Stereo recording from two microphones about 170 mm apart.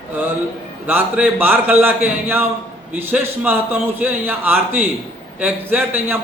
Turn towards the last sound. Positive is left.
turn(degrees=-10)  # may be behind; listen again after turning